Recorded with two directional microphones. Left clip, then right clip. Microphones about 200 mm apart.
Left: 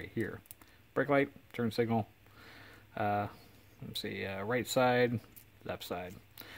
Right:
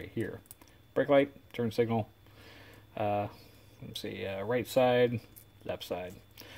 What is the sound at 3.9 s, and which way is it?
Speech, 25° left (ahead or behind).